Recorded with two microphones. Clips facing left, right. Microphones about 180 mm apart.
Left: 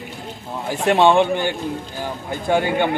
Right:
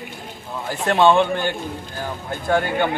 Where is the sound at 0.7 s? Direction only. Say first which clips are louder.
Left 1 dB; 15° left (ahead or behind).